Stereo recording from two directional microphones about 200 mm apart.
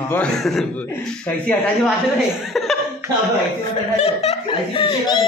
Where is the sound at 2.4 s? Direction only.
Centre (ahead or behind).